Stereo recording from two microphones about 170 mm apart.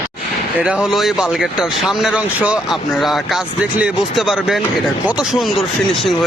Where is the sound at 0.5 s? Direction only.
5° right (ahead or behind).